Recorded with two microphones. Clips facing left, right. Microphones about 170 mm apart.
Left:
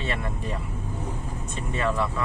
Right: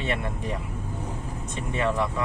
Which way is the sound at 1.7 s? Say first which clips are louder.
Right 1 dB; 20° right (ahead or behind).